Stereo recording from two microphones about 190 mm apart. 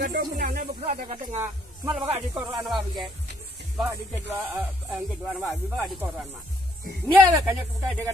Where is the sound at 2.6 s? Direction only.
Centre (ahead or behind).